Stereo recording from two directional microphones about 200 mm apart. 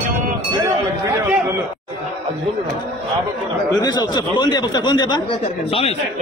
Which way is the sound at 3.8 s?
20° left (ahead or behind).